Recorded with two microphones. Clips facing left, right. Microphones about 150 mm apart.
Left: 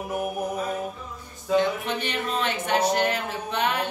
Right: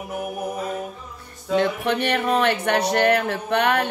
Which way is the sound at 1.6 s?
65° right (ahead or behind).